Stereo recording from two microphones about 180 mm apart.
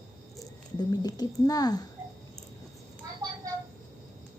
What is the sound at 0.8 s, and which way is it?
Speech, 20° left (ahead or behind).